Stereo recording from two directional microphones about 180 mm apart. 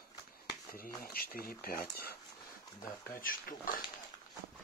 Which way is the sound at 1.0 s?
55° left (ahead or behind).